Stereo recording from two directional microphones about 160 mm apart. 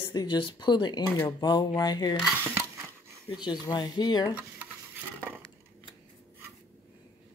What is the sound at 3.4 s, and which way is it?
Speech, 25° left (ahead or behind).